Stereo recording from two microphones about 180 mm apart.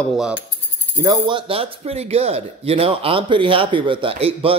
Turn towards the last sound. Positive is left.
turn(degrees=-30)  # may be behind; listen again after turning